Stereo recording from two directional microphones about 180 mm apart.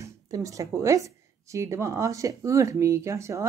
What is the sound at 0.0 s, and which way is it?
Speech, 20° right (ahead or behind).